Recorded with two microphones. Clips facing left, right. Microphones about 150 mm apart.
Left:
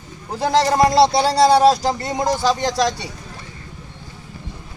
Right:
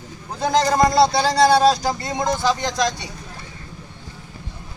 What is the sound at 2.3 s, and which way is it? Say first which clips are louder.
Speech: left 2 dB; 10° left (ahead or behind).